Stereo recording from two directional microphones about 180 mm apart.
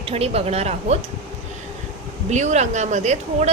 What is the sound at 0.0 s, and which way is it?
Speech, 35° right (ahead or behind).